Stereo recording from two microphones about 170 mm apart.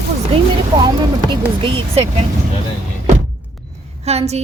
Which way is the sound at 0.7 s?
25° right (ahead or behind).